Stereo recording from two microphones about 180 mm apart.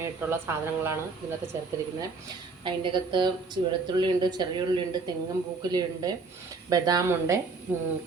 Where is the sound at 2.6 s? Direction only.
25° right (ahead or behind).